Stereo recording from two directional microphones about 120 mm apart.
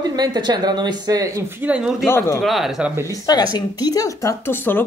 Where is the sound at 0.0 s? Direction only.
35° right (ahead or behind).